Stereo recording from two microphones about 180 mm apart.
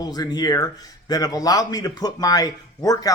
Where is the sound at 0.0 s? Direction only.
20° left (ahead or behind).